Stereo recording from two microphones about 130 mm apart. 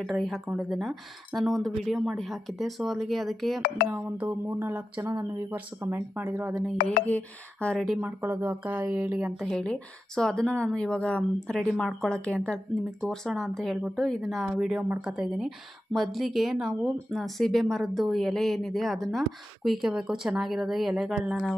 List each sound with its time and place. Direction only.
0.0 s speech: centre (ahead or behind)
3.9 s speech: 15° right (ahead or behind)
7.1 s speech: 10° left (ahead or behind)
8.0 s speech: 15° right (ahead or behind)
9.2 s speech: centre (ahead or behind)